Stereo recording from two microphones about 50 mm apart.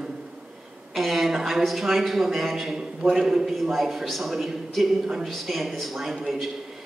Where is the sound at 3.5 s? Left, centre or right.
Centre.